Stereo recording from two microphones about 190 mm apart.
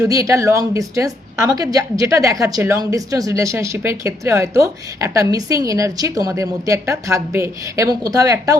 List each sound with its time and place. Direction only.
0.0 s a woman's voice: 15° right (ahead or behind)